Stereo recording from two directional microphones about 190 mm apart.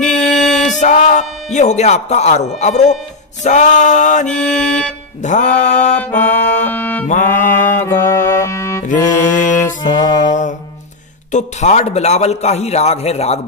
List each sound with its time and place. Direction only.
0.1 s a sound: 5° left (ahead or behind)
0.7 s a sound: 40° left (ahead or behind)
1.5 s a man's voice: 40° left (ahead or behind)
4.3 s mantra: centre (ahead or behind)
5.2 s a man's voice: 40° left (ahead or behind)
6.7 s music: 10° left (ahead or behind)
7.1 s a man's voice: 40° left (ahead or behind)
7.8 s music: 15° left (ahead or behind)
8.8 s music: 40° left (ahead or behind)
9.8 s music: 20° left (ahead or behind)
11.3 s a man's voice: 35° left (ahead or behind)